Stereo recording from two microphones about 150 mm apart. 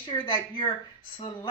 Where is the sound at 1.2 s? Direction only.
30° left (ahead or behind).